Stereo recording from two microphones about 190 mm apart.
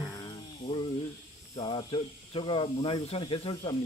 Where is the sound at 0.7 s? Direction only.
25° left (ahead or behind).